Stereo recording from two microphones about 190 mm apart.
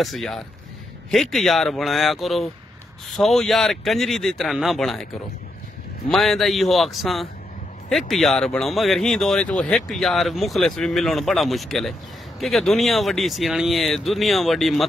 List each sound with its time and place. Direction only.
0.0 s speech: centre (ahead or behind)
6.0 s speech: centre (ahead or behind)